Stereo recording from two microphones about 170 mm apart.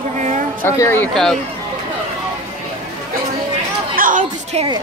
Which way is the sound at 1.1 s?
Centre (ahead or behind).